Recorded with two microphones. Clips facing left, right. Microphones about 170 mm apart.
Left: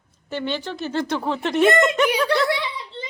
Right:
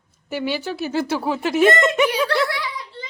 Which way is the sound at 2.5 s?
25° left (ahead or behind).